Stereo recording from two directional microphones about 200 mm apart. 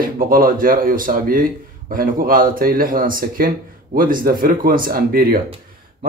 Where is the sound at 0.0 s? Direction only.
45° right (ahead or behind).